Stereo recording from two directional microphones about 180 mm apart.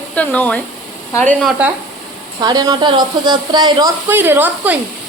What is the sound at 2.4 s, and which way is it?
A woman's voice, 20° right (ahead or behind).